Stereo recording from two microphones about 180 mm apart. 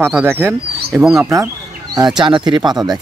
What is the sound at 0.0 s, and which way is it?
Speech, 15° right (ahead or behind).